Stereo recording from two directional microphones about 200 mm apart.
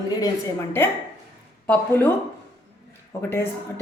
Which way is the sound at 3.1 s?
15° left (ahead or behind).